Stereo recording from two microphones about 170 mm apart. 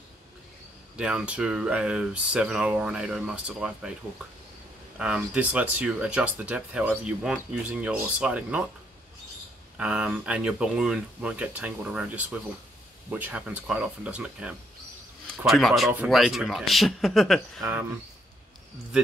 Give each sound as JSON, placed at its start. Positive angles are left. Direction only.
{"t": 0.9, "sound": "speech", "side_deg": -5}
{"t": 4.9, "sound": "speech", "side_deg": -5}
{"t": 9.8, "sound": "speech", "side_deg": -5}
{"t": 17.6, "sound": "speech", "side_deg": -15}